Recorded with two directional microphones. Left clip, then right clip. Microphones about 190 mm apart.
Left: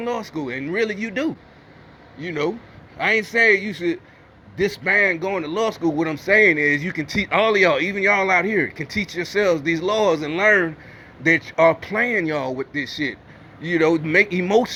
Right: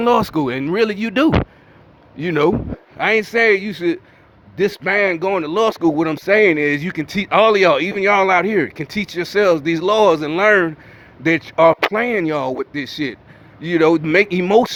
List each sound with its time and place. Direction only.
0.0 s a man's voice: 30° right (ahead or behind)